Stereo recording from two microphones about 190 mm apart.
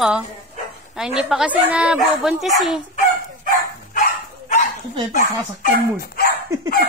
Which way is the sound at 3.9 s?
45° left (ahead or behind).